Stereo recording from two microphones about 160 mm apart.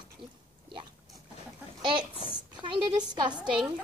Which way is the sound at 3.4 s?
5° right (ahead or behind).